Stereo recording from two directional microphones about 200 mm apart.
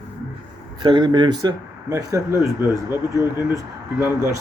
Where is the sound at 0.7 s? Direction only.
25° right (ahead or behind).